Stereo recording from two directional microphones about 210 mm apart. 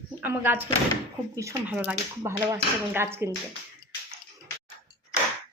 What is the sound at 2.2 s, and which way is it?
Speech, 15° right (ahead or behind).